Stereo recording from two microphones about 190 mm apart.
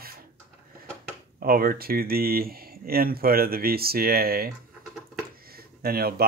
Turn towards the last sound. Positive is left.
turn(degrees=-55)  # may be behind; listen again after turning